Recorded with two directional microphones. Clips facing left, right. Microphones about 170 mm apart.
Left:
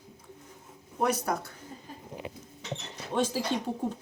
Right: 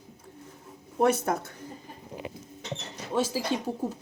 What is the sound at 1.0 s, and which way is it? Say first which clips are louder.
Speech: right 4 dB; 25° right (ahead or behind).